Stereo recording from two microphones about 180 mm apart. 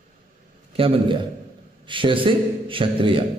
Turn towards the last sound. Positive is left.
turn(degrees=-30)  # may be behind; listen again after turning